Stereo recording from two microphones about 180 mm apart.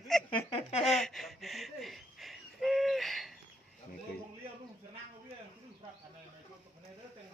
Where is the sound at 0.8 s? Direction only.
Centre (ahead or behind).